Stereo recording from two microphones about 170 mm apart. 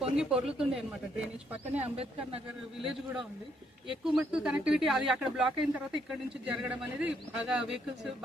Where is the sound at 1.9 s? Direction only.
35° right (ahead or behind).